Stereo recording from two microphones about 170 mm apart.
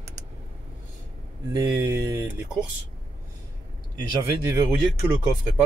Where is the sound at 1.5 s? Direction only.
15° right (ahead or behind).